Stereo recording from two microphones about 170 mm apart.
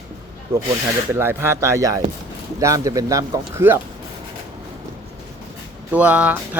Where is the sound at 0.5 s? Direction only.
15° right (ahead or behind).